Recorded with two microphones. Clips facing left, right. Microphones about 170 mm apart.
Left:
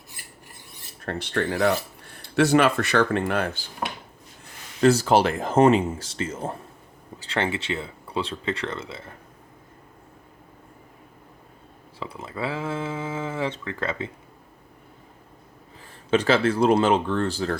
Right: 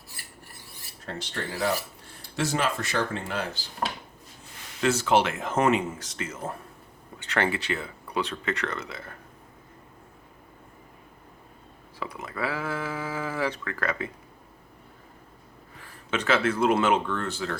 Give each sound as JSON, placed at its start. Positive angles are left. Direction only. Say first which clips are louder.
{"t": 0.1, "sound": "filing", "louder": "even", "side_deg": 20}
{"t": 1.0, "sound": "speech", "louder": "left 8 dB", "side_deg": 60}
{"t": 4.8, "sound": "speech", "louder": "left 5 dB", "side_deg": 35}
{"t": 11.9, "sound": "speech", "louder": "left 1 dB", "side_deg": 30}
{"t": 15.8, "sound": "speech", "louder": "left 8 dB", "side_deg": 30}